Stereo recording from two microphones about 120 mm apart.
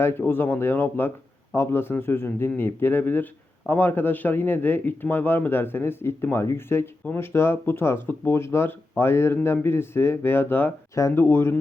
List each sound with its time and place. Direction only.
0.0 s a man's voice: 20° left (ahead or behind)